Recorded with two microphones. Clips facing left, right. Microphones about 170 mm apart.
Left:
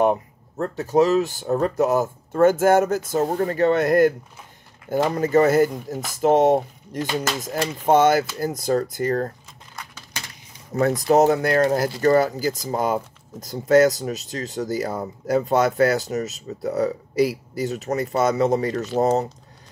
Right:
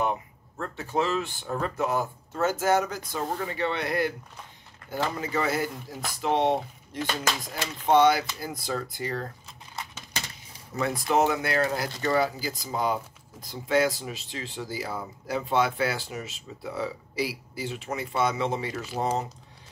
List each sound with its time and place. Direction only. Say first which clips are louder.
0.0 s speech: left 9 dB; 40° left (ahead or behind)
10.7 s speech: left 8 dB; 40° left (ahead or behind)